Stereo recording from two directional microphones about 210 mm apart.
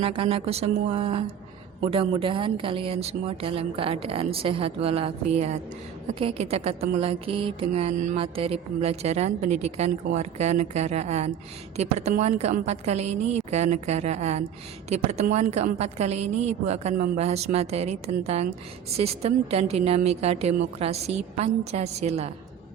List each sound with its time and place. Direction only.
0.0 s speech: 25° right (ahead or behind)
6.1 s mantra: 30° right (ahead or behind)
18.9 s speech: 30° right (ahead or behind)
20.7 s mantra: 30° right (ahead or behind)